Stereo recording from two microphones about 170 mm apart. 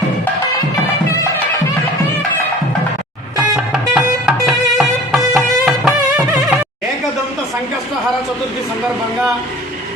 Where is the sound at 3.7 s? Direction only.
5° right (ahead or behind).